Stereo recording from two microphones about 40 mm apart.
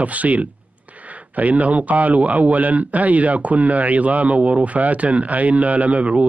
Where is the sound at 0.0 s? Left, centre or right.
Right.